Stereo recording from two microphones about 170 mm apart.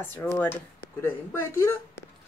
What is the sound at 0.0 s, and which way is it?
Speech, 10° left (ahead or behind).